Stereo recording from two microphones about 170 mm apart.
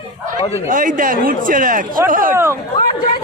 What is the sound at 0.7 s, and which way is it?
Speech, 55° right (ahead or behind).